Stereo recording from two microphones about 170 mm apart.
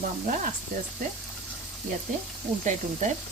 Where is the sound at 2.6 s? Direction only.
50° right (ahead or behind).